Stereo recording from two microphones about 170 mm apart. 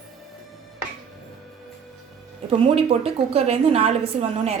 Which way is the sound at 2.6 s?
35° right (ahead or behind).